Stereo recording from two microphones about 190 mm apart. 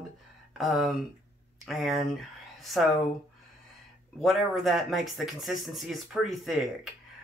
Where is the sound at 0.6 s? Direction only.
Centre (ahead or behind).